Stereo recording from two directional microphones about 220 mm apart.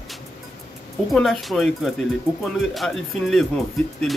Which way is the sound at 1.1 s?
Centre (ahead or behind).